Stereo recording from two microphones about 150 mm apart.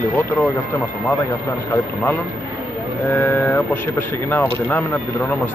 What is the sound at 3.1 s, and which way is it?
Speech, 15° left (ahead or behind).